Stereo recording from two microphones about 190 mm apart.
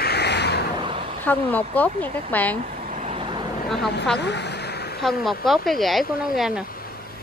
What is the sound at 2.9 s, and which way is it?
Vehicle, 35° right (ahead or behind).